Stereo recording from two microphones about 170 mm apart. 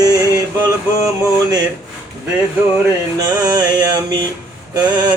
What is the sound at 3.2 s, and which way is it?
Music, 25° right (ahead or behind).